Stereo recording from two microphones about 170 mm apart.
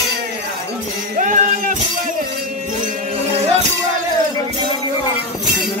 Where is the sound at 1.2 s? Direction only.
55° right (ahead or behind).